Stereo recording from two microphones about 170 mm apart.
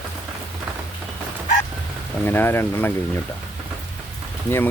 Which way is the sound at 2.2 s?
10° left (ahead or behind).